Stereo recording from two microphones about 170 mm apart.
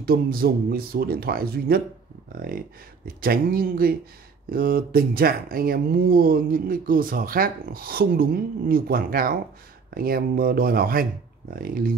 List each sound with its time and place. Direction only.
0.0 s speech: 60° right (ahead or behind)
3.2 s speech: 60° right (ahead or behind)